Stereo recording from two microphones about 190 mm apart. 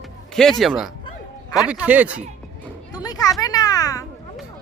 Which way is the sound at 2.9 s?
20° left (ahead or behind).